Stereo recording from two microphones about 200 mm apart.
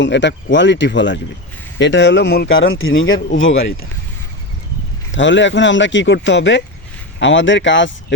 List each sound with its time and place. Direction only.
0.0 s speech: 60° left (ahead or behind)
2.5 s speech: 80° left
5.1 s speech: 65° left (ahead or behind)